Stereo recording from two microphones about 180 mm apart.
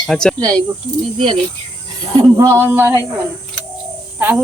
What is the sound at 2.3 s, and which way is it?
Speech, 15° right (ahead or behind).